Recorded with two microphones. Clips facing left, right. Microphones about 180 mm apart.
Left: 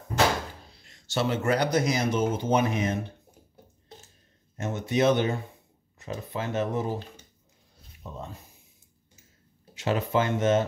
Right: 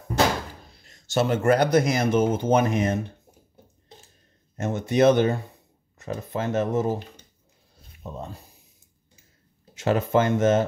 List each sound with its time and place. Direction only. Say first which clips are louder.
0.8 s speech: right 4 dB; 45° right (ahead or behind)
4.6 s speech: right 5 dB; 50° right (ahead or behind)
8.0 s speech: right 4 dB; 40° right (ahead or behind)
9.8 s speech: right 4 dB; 50° right (ahead or behind)